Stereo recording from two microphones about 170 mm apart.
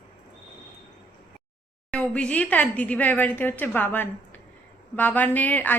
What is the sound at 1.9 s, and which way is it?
A woman's voice, 5° left (ahead or behind).